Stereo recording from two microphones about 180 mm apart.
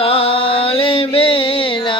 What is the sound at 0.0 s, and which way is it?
Mantra, 30° left (ahead or behind).